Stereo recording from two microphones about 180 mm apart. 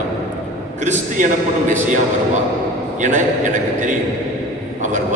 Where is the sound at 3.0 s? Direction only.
45° right (ahead or behind).